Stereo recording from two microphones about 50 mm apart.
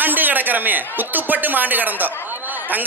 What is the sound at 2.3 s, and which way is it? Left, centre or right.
Chatter, right.